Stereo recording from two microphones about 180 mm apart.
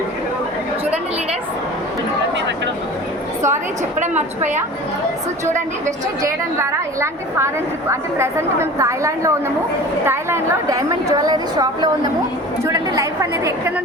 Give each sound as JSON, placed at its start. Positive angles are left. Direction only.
{"t": 4.0, "sound": "a woman's voice", "side_deg": -40}
{"t": 6.2, "sound": "a woman's voice", "side_deg": -15}